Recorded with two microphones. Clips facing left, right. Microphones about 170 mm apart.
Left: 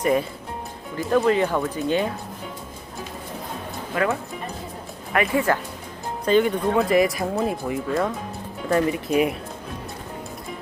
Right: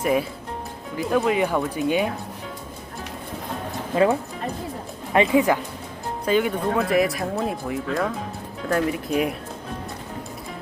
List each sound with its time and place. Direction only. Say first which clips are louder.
0.0 s speech: left 1 dB; 5° right (ahead or behind)
3.9 s speech: right 4 dB; 25° right (ahead or behind)
6.2 s speech: left 2 dB; 5° right (ahead or behind)